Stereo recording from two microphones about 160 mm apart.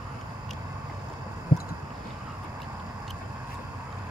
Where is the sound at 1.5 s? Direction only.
65° left (ahead or behind).